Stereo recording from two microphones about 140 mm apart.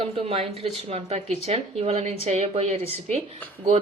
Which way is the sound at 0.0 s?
45° right (ahead or behind).